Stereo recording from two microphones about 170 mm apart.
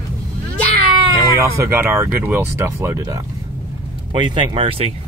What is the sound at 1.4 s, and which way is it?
Speech, 15° right (ahead or behind).